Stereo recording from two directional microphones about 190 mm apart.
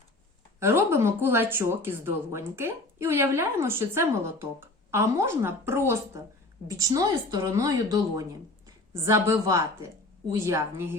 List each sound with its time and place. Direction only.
0.6 s speech: 10° right (ahead or behind)